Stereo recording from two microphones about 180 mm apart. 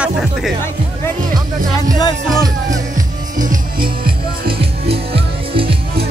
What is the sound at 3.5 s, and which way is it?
Music, 55° right (ahead or behind).